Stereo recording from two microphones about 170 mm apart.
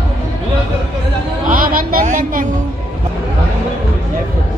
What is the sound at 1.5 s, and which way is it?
Music, 55° right (ahead or behind).